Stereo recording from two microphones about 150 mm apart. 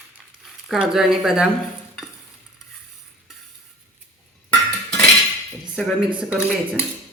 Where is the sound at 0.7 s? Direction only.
Centre (ahead or behind).